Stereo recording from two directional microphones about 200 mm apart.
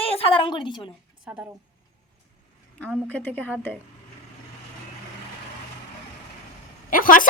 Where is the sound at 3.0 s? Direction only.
10° left (ahead or behind).